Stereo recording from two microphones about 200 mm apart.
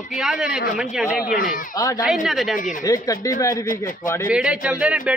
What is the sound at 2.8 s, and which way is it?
Speech, 15° left (ahead or behind).